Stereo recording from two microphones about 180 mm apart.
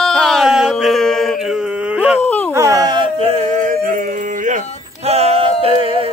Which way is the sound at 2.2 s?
10° left (ahead or behind).